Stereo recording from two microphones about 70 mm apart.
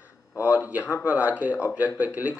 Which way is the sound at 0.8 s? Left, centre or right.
Left.